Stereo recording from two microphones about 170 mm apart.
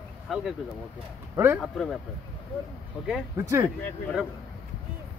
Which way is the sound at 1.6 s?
Centre (ahead or behind).